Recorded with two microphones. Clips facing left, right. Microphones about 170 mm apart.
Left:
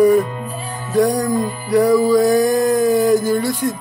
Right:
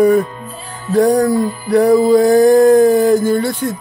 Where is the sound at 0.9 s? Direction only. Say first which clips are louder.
Right 4 dB; 30° right (ahead or behind).